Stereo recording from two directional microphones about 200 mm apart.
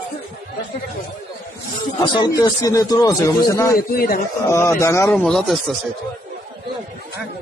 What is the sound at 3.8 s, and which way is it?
Speech, 50° left (ahead or behind).